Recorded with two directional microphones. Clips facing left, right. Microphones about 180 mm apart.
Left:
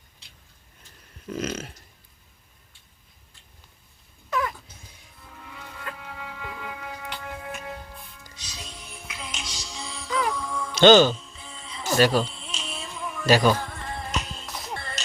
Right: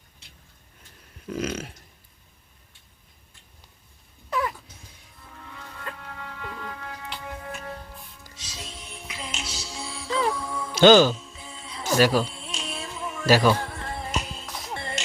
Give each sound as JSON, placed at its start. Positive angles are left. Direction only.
{"t": 1.3, "sound": "a sound", "side_deg": -10}
{"t": 5.3, "sound": "music", "side_deg": 10}
{"t": 10.1, "sound": "music", "side_deg": -25}
{"t": 10.3, "sound": "music", "side_deg": -5}
{"t": 14.8, "sound": "music", "side_deg": -25}